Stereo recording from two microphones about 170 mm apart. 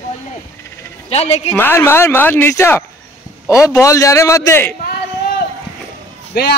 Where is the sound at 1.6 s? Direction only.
15° left (ahead or behind).